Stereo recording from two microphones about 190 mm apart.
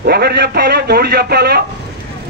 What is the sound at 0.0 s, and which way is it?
A man's voice, 55° right (ahead or behind).